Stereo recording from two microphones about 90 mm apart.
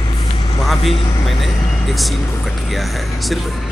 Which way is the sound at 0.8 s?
90° left.